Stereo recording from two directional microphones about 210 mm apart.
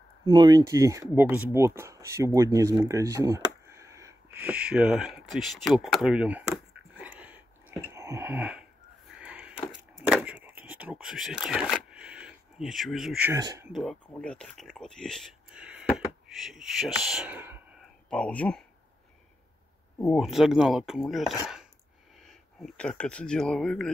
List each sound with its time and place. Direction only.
0.3 s speech: 20° right (ahead or behind)
7.9 s a sound: 15° right (ahead or behind)
9.2 s wood: 5° right (ahead or behind)
9.7 s a sound: 5° right (ahead or behind)
13.3 s speech: 15° right (ahead or behind)
13.7 s speech: centre (ahead or behind)
18.1 s speech: 5° left (ahead or behind)
20.0 s speech: centre (ahead or behind)